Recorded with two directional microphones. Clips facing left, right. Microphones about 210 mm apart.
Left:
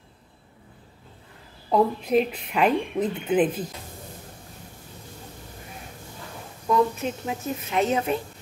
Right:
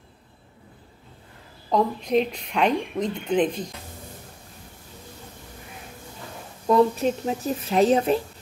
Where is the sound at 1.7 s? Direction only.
5° left (ahead or behind).